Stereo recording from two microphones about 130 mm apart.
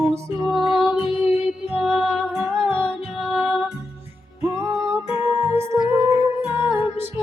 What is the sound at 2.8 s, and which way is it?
Music, 50° left (ahead or behind).